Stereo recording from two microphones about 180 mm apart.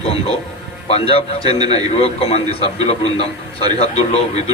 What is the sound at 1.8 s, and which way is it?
Speech, 35° left (ahead or behind).